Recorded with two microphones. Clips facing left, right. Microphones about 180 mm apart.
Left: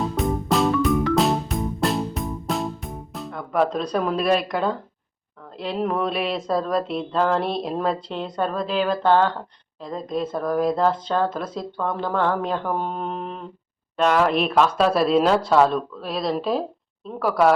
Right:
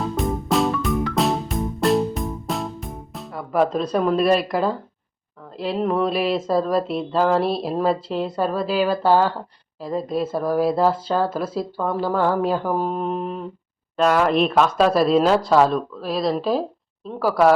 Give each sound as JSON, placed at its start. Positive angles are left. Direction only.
{"t": 0.0, "sound": "music", "side_deg": 0}
{"t": 5.5, "sound": "speech", "side_deg": 0}